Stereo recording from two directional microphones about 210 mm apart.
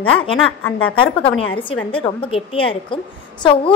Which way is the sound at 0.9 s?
25° left (ahead or behind).